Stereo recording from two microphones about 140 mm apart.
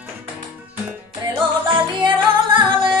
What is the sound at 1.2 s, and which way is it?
Music, 35° right (ahead or behind).